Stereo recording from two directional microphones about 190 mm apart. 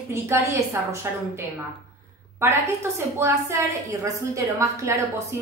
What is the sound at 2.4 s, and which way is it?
A woman's voice, 10° right (ahead or behind).